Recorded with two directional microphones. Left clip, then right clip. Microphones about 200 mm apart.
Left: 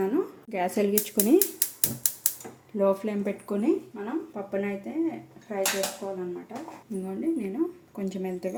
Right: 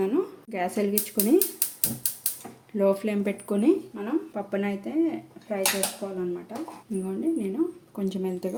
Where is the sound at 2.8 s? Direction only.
15° right (ahead or behind).